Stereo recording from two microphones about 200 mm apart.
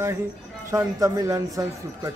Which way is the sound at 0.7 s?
15° right (ahead or behind).